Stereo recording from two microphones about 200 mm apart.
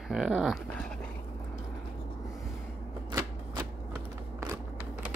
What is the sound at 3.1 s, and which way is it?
Shuffling cards, 20° right (ahead or behind).